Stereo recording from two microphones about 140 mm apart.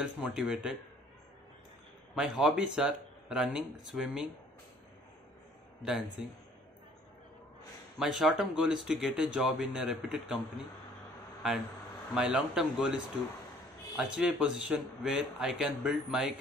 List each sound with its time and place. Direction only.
0.0 s speech: 5° right (ahead or behind)
2.1 s speech: 5° right (ahead or behind)
5.8 s a man's voice: 5° right (ahead or behind)
8.0 s speech: 5° right (ahead or behind)
12.2 s speech: centre (ahead or behind)